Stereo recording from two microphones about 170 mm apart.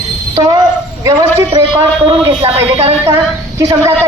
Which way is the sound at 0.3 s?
20° right (ahead or behind).